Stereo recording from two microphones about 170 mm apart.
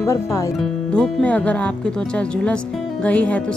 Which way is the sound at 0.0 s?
20° left (ahead or behind).